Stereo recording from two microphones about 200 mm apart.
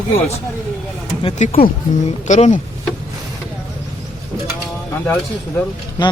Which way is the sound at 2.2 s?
40° left (ahead or behind).